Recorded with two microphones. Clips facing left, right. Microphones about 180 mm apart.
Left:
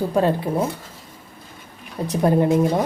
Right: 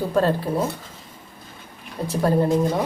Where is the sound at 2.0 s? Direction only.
20° left (ahead or behind).